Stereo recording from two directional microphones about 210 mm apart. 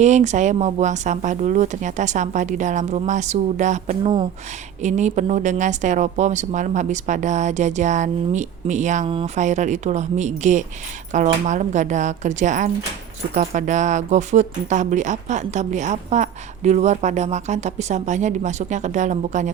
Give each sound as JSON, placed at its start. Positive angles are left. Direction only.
{"t": 0.0, "sound": "speech", "side_deg": -35}